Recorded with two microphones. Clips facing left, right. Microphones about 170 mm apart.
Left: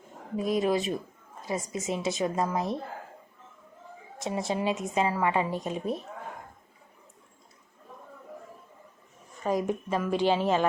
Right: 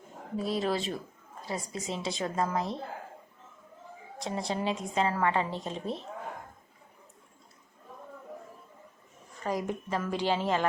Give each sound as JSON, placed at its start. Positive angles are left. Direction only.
{"t": 0.3, "sound": "a woman's voice", "side_deg": 15}
{"t": 4.2, "sound": "a woman's voice", "side_deg": 20}
{"t": 9.4, "sound": "a woman's voice", "side_deg": 15}